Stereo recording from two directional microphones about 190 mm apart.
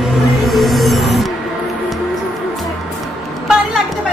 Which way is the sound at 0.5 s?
Centre (ahead or behind).